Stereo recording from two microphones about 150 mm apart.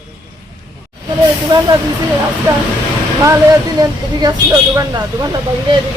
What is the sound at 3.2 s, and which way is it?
Speech, 25° right (ahead or behind).